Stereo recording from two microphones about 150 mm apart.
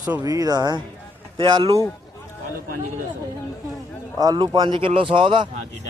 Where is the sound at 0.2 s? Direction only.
25° right (ahead or behind).